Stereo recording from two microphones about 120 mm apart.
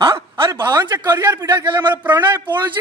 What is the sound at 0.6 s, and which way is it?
A man's voice, 35° right (ahead or behind).